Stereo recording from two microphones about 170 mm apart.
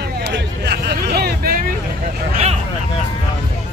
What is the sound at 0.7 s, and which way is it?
Hubbub, 75° right (ahead or behind).